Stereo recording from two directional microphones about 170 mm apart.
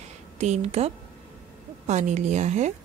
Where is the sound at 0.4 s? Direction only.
40° right (ahead or behind).